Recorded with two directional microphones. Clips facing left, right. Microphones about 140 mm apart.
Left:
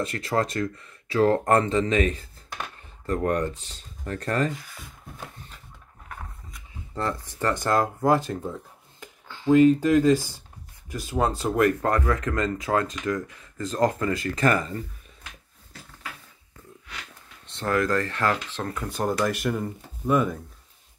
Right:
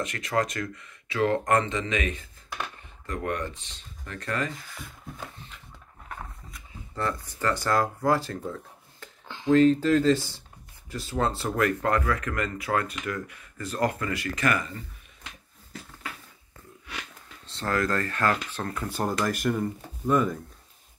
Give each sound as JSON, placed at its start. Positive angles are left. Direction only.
{"t": 0.0, "sound": "speech", "side_deg": 30}
{"t": 7.0, "sound": "speech", "side_deg": 25}
{"t": 11.8, "sound": "speech", "side_deg": 30}
{"t": 17.5, "sound": "speech", "side_deg": 20}
{"t": 18.6, "sound": "speech", "side_deg": 0}